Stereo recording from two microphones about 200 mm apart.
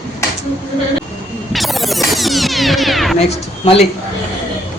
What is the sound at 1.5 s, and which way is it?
Music, centre (ahead or behind).